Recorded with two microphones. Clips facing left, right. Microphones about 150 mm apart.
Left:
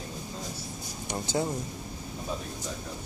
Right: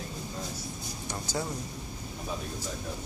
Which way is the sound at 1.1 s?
25° left (ahead or behind).